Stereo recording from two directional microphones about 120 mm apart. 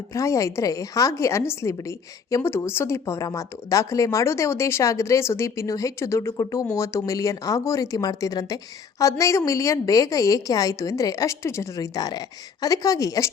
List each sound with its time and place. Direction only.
0.1 s a woman's voice: 25° left (ahead or behind)